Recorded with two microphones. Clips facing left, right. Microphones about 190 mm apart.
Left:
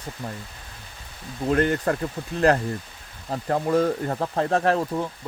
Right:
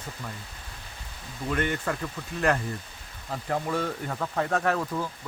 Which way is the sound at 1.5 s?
35° left (ahead or behind).